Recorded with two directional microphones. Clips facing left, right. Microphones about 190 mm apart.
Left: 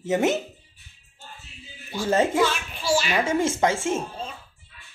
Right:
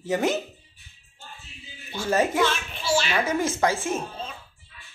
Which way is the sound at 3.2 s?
25° left (ahead or behind).